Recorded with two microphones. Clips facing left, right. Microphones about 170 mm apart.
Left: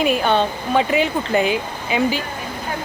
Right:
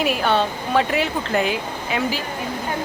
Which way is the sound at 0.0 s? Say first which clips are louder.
Left 2 dB; centre (ahead or behind).